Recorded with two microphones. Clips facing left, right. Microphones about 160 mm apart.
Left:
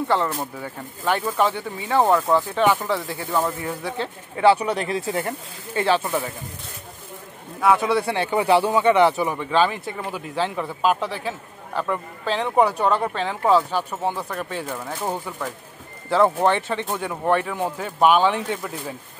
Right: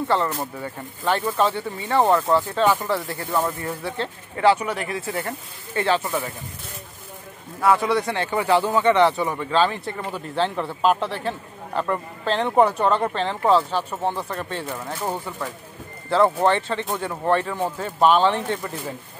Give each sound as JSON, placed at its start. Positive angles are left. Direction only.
{"t": 1.0, "sound": "speech", "side_deg": 10}
{"t": 3.3, "sound": "speech", "side_deg": 0}
{"t": 4.0, "sound": "speech", "side_deg": 15}
{"t": 6.0, "sound": "speech", "side_deg": 10}
{"t": 7.6, "sound": "speech", "side_deg": 0}
{"t": 8.1, "sound": "speech", "side_deg": 15}